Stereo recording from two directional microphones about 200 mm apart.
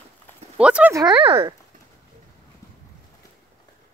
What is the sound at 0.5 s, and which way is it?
Speech, 5° right (ahead or behind).